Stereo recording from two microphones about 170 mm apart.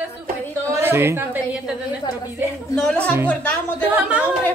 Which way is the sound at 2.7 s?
5° left (ahead or behind).